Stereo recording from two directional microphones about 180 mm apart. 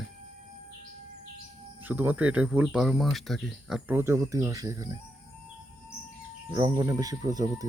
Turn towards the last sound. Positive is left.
turn(degrees=-20)  # may be behind; listen again after turning